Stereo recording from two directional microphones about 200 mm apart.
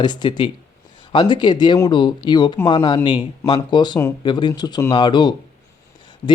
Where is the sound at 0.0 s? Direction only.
20° left (ahead or behind).